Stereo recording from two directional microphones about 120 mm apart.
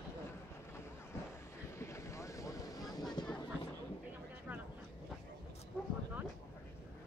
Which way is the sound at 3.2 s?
35° left (ahead or behind).